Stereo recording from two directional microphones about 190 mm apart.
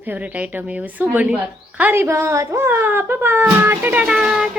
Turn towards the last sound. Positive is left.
turn(degrees=-5)  # may be behind; listen again after turning